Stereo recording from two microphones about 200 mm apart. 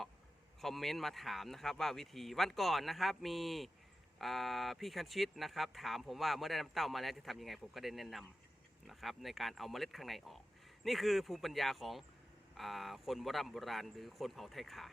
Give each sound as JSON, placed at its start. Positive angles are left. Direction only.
{"t": 0.6, "sound": "speech", "side_deg": 0}